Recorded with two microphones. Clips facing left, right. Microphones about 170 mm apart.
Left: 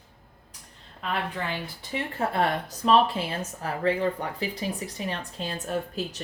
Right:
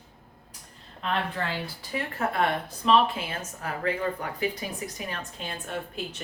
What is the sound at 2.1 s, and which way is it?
A woman's voice, 30° left (ahead or behind).